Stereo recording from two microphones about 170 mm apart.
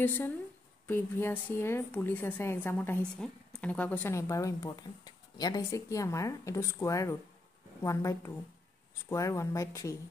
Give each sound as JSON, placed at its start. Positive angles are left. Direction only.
{"t": 0.0, "sound": "a woman's voice", "side_deg": 15}